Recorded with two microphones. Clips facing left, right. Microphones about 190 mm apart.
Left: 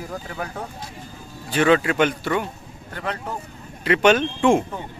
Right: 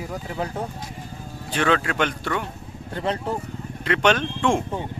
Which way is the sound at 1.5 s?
5° left (ahead or behind).